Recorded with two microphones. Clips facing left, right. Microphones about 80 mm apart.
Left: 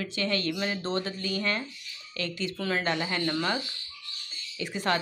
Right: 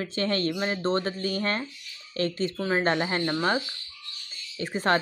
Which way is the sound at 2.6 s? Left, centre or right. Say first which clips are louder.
Right 3 dB; right.